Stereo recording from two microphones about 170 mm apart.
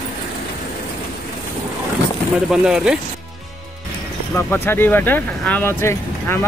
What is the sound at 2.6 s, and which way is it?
Speech, 5° right (ahead or behind).